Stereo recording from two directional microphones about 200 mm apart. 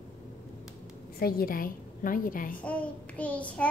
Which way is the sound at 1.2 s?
45° left (ahead or behind).